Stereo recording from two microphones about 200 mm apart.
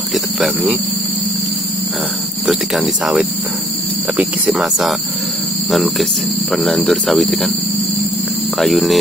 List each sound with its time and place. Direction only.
0.1 s a sound: 5° right (ahead or behind)
2.4 s speech: centre (ahead or behind)
8.5 s speech: centre (ahead or behind)